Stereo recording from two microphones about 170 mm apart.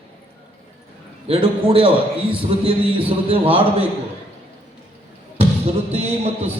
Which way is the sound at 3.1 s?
30° right (ahead or behind).